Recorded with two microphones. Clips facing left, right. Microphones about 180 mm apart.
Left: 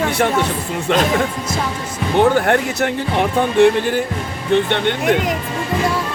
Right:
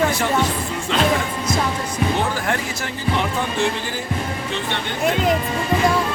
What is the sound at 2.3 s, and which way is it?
Speech, 60° left (ahead or behind).